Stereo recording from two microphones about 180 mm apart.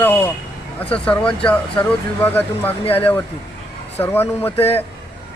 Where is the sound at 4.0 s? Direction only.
10° left (ahead or behind).